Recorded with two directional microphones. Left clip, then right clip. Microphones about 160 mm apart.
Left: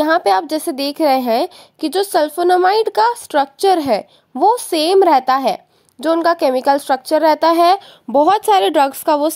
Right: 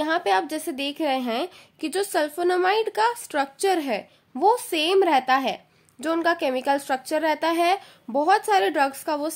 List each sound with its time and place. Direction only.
0.0 s a woman's voice: 45° left (ahead or behind)